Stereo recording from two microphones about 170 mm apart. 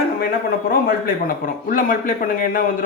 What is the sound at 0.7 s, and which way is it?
A man's voice, 60° left (ahead or behind).